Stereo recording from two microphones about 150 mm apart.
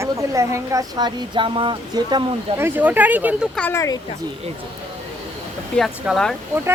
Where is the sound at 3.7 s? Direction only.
20° left (ahead or behind).